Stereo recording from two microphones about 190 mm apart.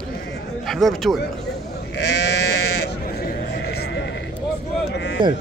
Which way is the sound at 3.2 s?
55° left (ahead or behind).